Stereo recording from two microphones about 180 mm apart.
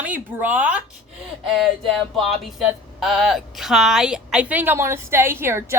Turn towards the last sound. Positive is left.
turn(degrees=-15)  # may be behind; listen again after turning